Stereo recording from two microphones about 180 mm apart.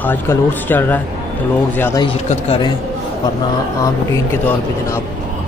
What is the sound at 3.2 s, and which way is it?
Speech, 25° left (ahead or behind).